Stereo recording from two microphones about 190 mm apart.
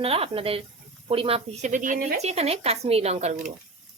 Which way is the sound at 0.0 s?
30° right (ahead or behind).